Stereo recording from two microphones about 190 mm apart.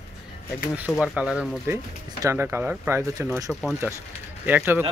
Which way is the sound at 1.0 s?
5° right (ahead or behind).